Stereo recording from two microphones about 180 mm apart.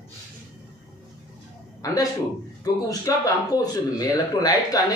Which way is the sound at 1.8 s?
20° left (ahead or behind).